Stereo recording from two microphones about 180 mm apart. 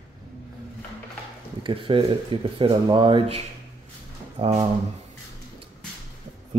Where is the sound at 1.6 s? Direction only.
30° right (ahead or behind).